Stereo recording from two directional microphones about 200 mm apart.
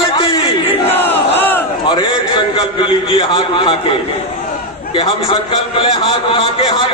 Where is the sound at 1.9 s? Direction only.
25° left (ahead or behind).